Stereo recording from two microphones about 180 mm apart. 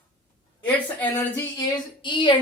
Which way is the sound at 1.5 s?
25° left (ahead or behind).